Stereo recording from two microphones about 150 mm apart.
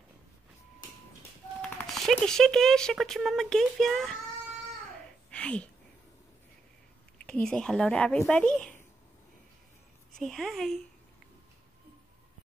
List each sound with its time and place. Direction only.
1.6 s speech: centre (ahead or behind)
4.9 s a sound: 10° left (ahead or behind)
7.2 s speech: 5° left (ahead or behind)
10.1 s speech: 5° left (ahead or behind)